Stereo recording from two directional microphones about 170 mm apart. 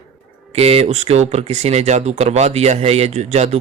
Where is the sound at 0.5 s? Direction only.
35° right (ahead or behind).